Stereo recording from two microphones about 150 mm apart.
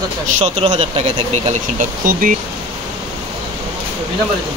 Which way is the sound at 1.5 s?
60° right (ahead or behind).